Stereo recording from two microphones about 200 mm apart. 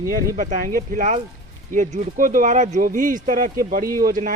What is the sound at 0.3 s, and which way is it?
Speech, 40° right (ahead or behind).